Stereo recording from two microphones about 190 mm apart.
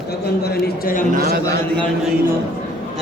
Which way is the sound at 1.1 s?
55° right (ahead or behind).